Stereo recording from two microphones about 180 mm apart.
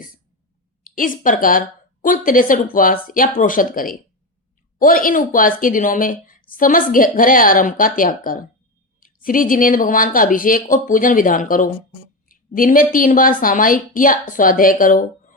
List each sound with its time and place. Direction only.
0.9 s a woman's voice: 50° left (ahead or behind)